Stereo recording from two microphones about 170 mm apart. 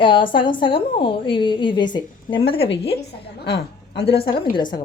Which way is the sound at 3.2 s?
80° left.